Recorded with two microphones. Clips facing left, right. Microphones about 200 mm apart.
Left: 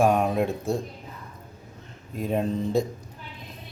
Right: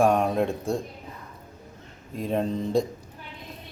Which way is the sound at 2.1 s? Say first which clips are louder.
Even; 5° left (ahead or behind).